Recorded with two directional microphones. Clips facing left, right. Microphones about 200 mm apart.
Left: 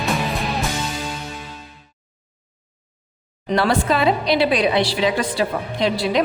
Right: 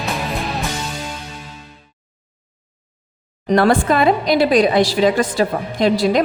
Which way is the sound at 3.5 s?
50° right (ahead or behind).